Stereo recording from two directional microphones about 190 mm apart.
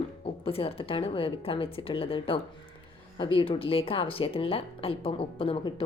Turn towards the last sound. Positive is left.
turn(degrees=30)  # may be behind; listen again after turning